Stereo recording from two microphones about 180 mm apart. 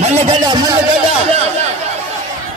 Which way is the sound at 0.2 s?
25° right (ahead or behind).